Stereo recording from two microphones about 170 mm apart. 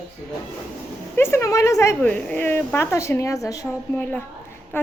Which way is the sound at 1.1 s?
15° left (ahead or behind).